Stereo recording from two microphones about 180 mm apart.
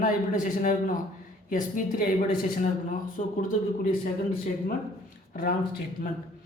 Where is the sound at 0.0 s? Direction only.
50° left (ahead or behind).